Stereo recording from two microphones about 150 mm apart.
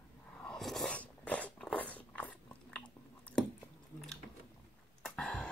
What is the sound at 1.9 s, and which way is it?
Biting, 10° left (ahead or behind).